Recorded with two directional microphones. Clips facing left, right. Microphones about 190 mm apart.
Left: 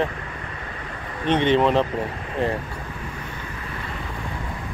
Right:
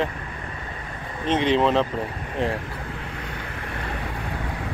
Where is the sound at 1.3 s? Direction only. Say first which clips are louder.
Left 1 dB; centre (ahead or behind).